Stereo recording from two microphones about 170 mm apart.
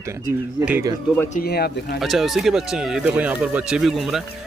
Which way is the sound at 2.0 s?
Centre (ahead or behind).